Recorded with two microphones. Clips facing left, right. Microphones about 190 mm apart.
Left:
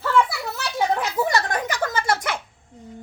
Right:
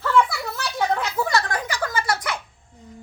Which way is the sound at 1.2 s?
20° left (ahead or behind).